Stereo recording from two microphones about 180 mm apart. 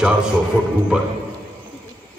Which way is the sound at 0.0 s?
5° right (ahead or behind).